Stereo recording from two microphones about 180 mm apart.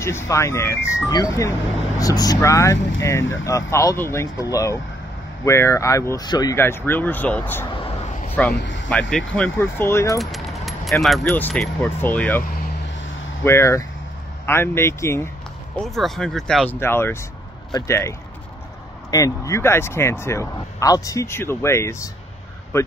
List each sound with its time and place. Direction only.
0.0 s speech: 15° left (ahead or behind)
8.5 s a sound: 90° left
9.3 s speech: 10° left (ahead or behind)
10.1 s vehicle: centre (ahead or behind)
11.2 s speech: 10° left (ahead or behind)
15.8 s speech: centre (ahead or behind)